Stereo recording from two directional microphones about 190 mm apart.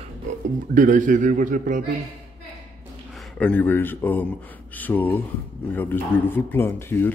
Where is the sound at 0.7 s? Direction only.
45° right (ahead or behind).